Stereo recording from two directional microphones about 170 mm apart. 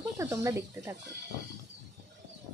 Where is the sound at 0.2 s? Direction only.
20° right (ahead or behind).